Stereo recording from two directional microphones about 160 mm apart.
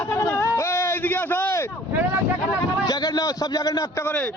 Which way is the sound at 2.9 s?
25° left (ahead or behind).